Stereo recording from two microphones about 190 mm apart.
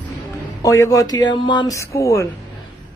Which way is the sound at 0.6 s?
15° left (ahead or behind).